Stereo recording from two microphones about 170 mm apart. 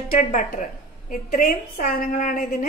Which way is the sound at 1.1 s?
55° left (ahead or behind).